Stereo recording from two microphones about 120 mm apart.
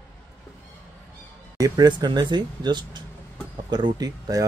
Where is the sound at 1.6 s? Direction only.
35° right (ahead or behind).